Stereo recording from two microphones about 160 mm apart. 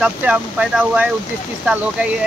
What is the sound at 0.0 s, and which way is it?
Speech, 10° right (ahead or behind).